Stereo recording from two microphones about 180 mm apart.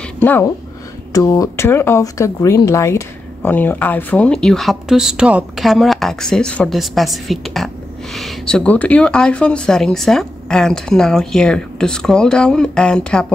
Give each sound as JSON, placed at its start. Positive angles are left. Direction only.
{"t": 0.2, "sound": "speech", "side_deg": 10}